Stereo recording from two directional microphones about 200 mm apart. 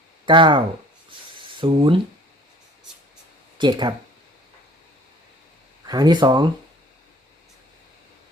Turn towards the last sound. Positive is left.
turn(degrees=-20)  # may be behind; listen again after turning